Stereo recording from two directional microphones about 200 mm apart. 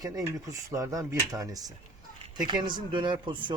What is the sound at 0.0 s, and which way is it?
Speech, 15° right (ahead or behind).